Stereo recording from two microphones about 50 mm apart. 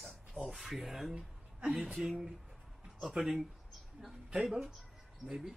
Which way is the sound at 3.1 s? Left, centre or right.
Centre.